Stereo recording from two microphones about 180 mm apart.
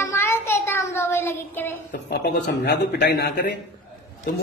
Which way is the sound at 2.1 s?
65° left (ahead or behind).